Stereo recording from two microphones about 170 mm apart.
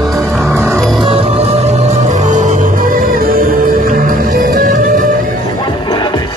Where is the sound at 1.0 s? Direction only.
30° right (ahead or behind); by 5.1 s 50° right (ahead or behind).